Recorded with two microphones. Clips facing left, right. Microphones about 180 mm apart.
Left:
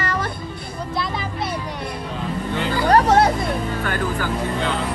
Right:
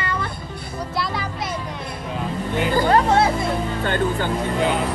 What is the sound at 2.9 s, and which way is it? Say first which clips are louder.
Vehicle: left 4 dB; 40° left (ahead or behind).